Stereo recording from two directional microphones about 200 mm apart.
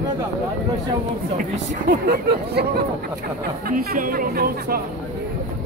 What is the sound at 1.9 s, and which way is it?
Speech, 50° right (ahead or behind).